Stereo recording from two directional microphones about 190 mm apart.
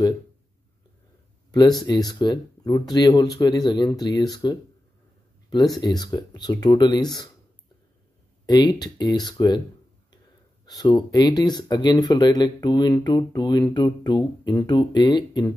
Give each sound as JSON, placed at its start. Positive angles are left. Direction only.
{"t": 1.5, "sound": "speech", "side_deg": 20}
{"t": 8.5, "sound": "speech", "side_deg": 20}
{"t": 10.8, "sound": "speech", "side_deg": 20}